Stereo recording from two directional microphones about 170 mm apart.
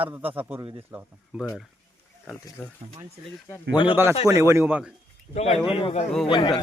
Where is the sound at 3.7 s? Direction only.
30° left (ahead or behind).